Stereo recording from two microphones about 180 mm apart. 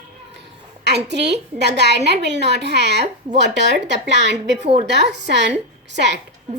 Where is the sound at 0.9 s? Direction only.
70° right (ahead or behind).